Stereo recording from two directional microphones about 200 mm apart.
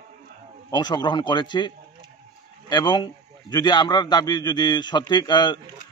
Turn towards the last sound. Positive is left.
turn(degrees=20)  # may be behind; listen again after turning